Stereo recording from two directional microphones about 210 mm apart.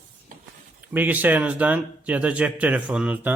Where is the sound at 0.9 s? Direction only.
10° right (ahead or behind).